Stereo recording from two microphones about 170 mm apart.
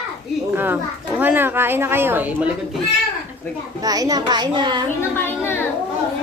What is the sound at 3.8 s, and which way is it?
A child's voice, 20° right (ahead or behind).